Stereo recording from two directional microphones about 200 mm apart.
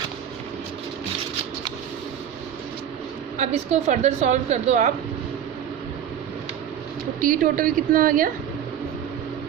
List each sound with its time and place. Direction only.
3.3 s speech: 35° right (ahead or behind)
7.2 s a woman's voice: 45° right (ahead or behind)